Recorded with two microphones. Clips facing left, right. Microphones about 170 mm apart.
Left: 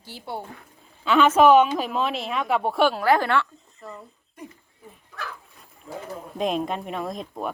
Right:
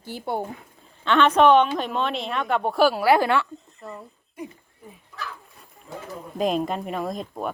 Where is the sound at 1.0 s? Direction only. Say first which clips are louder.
Left 1 dB; 5° left (ahead or behind); by 3.5 s 15° right (ahead or behind).